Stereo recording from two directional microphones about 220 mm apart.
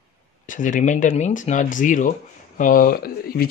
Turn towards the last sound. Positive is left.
turn(degrees=40)  # may be behind; listen again after turning